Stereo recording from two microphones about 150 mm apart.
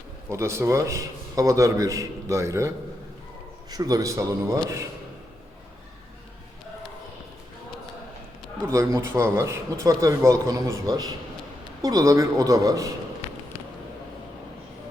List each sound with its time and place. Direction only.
0.3 s a man's voice: 20° right (ahead or behind)
8.6 s a man's voice: 20° right (ahead or behind)